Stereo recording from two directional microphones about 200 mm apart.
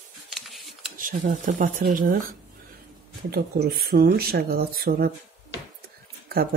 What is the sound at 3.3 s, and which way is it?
Speech, 50° right (ahead or behind).